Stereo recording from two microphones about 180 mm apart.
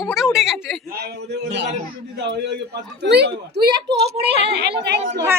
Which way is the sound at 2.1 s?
70° right (ahead or behind).